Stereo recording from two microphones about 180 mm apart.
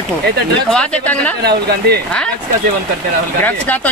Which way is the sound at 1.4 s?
65° right (ahead or behind).